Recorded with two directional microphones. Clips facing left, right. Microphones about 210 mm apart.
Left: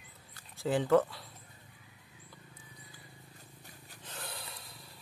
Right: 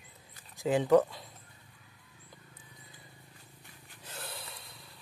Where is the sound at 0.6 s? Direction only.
15° right (ahead or behind).